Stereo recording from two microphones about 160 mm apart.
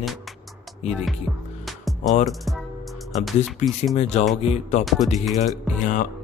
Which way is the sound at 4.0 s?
45° left (ahead or behind).